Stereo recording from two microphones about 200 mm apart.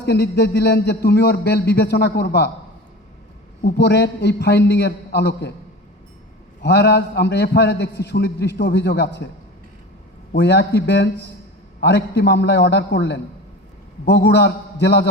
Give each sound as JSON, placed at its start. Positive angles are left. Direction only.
{"t": 0.0, "sound": "a man's voice", "side_deg": 55}
{"t": 3.6, "sound": "a man's voice", "side_deg": 55}
{"t": 6.6, "sound": "a man's voice", "side_deg": 55}
{"t": 10.3, "sound": "a man's voice", "side_deg": 55}